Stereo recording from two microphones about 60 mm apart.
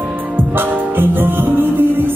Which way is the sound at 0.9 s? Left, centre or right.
Right.